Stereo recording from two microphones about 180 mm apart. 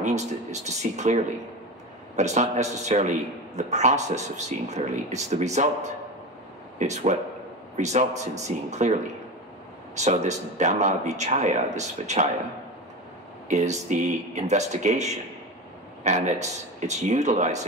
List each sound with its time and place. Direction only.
0.0 s speech: 40° right (ahead or behind)
9.9 s speech: 40° right (ahead or behind)
13.5 s speech: 40° right (ahead or behind)